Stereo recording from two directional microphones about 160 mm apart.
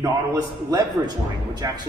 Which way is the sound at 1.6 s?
25° right (ahead or behind).